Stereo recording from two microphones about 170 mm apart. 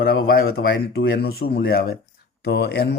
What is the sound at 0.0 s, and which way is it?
Speech, 60° left (ahead or behind).